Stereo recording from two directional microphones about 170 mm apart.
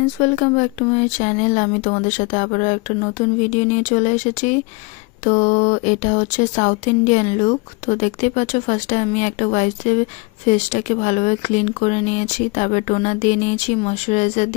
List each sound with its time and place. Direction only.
0.0 s speech: 45° left (ahead or behind)